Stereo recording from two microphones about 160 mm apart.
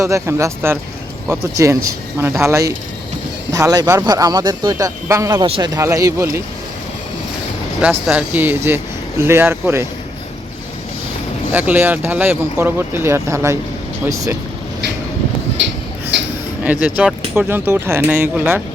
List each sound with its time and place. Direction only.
0.0 s speech: 20° right (ahead or behind)
7.8 s speech: 5° right (ahead or behind)
11.5 s speech: 10° right (ahead or behind)
17.0 s speech: 5° right (ahead or behind)